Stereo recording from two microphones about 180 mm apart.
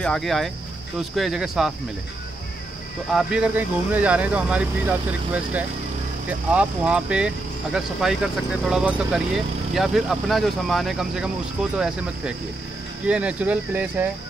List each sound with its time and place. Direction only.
0.0 s speech: centre (ahead or behind)
3.2 s speech: 5° right (ahead or behind)
13.0 s speech: 5° right (ahead or behind)